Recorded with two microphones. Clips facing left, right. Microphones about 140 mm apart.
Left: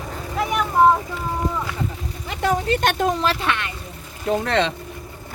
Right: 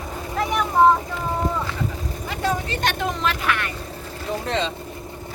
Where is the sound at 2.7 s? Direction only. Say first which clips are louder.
Left 5 dB; 50° left (ahead or behind).